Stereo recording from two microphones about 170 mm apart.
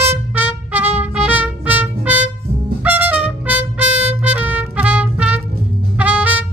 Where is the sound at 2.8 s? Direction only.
10° right (ahead or behind).